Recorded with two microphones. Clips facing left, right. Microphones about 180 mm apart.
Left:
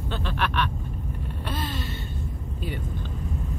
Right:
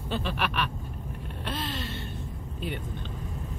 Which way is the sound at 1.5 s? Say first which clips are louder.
Left 1 dB; 5° left (ahead or behind).